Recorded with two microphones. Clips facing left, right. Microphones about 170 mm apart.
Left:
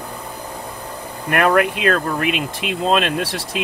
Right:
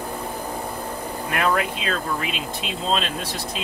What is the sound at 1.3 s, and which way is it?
Speech, 60° left (ahead or behind).